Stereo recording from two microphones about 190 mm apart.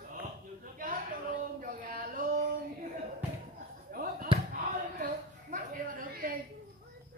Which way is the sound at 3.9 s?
45° right (ahead or behind).